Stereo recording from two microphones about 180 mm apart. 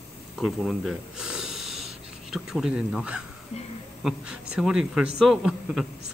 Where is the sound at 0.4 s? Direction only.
Centre (ahead or behind).